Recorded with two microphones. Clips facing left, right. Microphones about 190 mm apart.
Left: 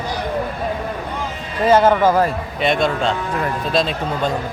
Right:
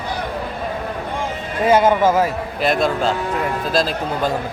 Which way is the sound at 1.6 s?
10° right (ahead or behind).